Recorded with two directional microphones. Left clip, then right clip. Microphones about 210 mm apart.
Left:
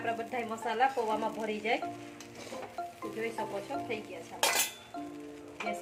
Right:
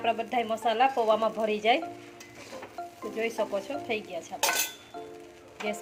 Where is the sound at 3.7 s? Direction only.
45° right (ahead or behind).